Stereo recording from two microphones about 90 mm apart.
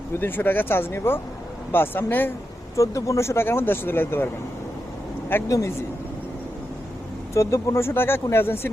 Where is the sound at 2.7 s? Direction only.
35° left (ahead or behind).